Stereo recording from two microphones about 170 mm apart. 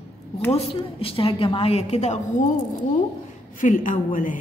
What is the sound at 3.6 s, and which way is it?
Speech, 50° left (ahead or behind).